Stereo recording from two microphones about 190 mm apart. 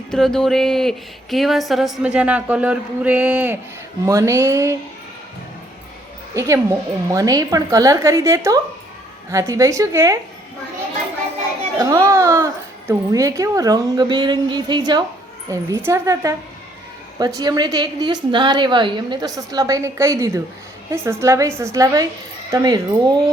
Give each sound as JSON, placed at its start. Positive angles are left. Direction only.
{"t": 0.1, "sound": "a woman's voice", "side_deg": 5}
{"t": 6.3, "sound": "a woman's voice", "side_deg": -15}
{"t": 11.8, "sound": "a woman's voice", "side_deg": -15}